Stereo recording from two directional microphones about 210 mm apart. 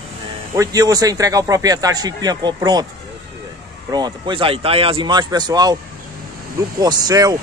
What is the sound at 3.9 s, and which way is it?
Speech, 20° right (ahead or behind).